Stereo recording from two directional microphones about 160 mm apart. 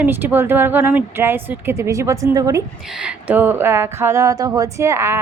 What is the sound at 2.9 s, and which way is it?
Speech, 5° right (ahead or behind).